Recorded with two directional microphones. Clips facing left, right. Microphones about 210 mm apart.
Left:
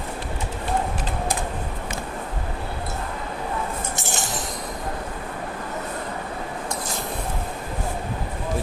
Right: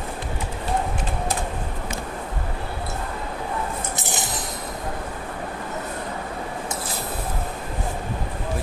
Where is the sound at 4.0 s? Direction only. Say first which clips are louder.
Even; 20° right (ahead or behind).